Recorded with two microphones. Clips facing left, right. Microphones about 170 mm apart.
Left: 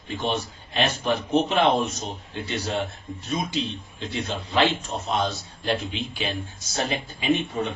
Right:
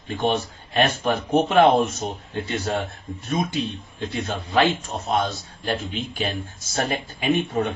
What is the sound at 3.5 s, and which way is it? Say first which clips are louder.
Speech: right 2 dB; 50° right (ahead or behind).